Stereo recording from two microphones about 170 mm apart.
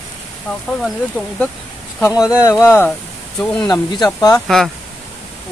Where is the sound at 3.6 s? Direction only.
25° left (ahead or behind).